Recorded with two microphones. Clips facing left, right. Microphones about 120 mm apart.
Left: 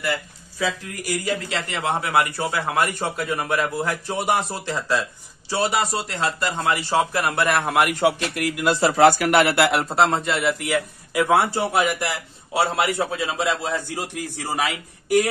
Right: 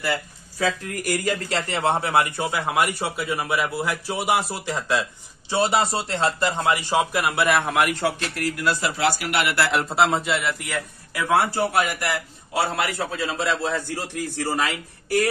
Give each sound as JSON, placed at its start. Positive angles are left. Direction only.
{"t": 0.0, "sound": "speech", "side_deg": -40}
{"t": 1.7, "sound": "a man's voice", "side_deg": -30}
{"t": 4.6, "sound": "a man's voice", "side_deg": -15}
{"t": 7.9, "sound": "a man's voice", "side_deg": 15}
{"t": 8.9, "sound": "speech", "side_deg": 45}
{"t": 9.7, "sound": "a man's voice", "side_deg": 0}
{"t": 11.1, "sound": "a man's voice", "side_deg": 20}